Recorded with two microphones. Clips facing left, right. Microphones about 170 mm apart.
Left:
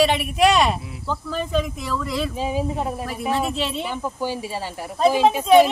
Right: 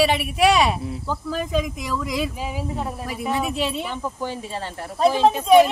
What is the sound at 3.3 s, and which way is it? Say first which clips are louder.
Speech: right 1 dB; 10° right (ahead or behind).